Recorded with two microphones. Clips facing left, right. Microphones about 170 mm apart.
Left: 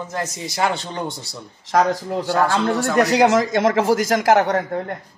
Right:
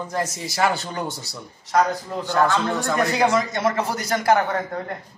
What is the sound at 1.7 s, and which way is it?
Speech, 90° left.